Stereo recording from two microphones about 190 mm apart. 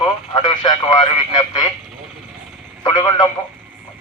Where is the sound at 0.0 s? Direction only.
20° left (ahead or behind).